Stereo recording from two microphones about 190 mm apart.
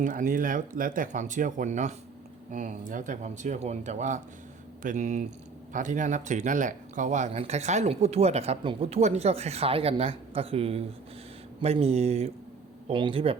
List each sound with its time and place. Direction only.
0.0 s speech: 45° right (ahead or behind)